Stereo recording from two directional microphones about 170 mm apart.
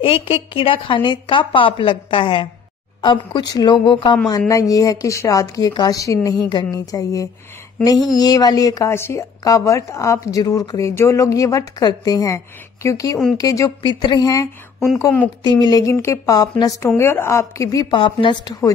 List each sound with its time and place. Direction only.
0.0 s a woman's voice: 35° left (ahead or behind)